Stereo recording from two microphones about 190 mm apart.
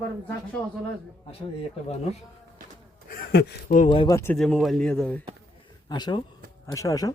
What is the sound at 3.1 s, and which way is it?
Speech, 55° left (ahead or behind).